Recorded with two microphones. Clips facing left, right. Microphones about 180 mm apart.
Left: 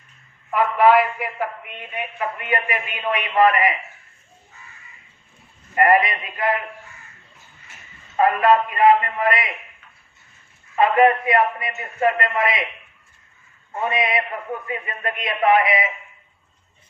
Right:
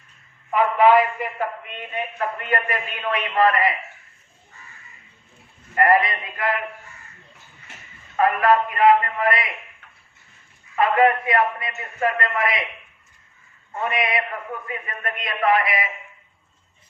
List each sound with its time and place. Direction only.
0.5 s a man's voice: 5° left (ahead or behind)
5.7 s a man's voice: 20° left (ahead or behind)
8.1 s a man's voice: 25° left (ahead or behind)
10.8 s a man's voice: 25° left (ahead or behind)
13.8 s a man's voice: 25° left (ahead or behind)